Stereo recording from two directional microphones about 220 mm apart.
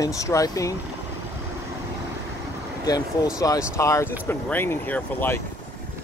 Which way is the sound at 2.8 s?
15° left (ahead or behind).